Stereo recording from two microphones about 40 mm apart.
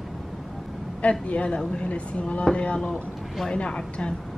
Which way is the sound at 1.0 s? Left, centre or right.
Left.